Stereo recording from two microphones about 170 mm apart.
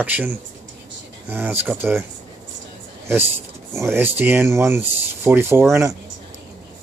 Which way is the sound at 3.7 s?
15° right (ahead or behind).